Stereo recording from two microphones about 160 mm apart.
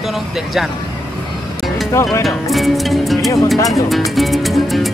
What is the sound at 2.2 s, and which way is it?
Speech, centre (ahead or behind).